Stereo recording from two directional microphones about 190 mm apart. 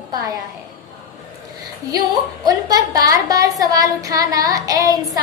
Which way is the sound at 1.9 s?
20° right (ahead or behind).